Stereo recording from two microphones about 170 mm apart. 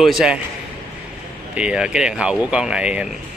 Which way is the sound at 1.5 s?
5° right (ahead or behind).